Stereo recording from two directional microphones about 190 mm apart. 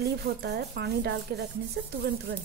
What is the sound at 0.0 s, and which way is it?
Speech, 60° right (ahead or behind).